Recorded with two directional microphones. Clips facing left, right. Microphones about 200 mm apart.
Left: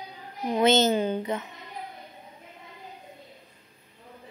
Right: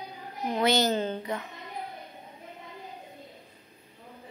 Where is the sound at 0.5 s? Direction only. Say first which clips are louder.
Left 4 dB; 20° left (ahead or behind).